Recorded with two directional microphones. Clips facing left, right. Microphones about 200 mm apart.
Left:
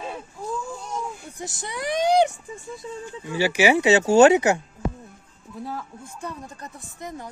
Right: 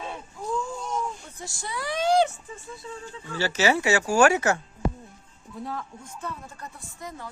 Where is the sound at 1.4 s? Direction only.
20° left (ahead or behind).